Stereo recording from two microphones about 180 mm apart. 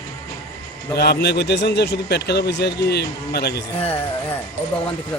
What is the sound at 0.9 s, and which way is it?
A man's voice, 65° left (ahead or behind).